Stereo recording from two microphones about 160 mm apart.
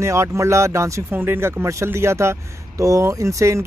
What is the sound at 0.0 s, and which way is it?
Speech, 20° right (ahead or behind).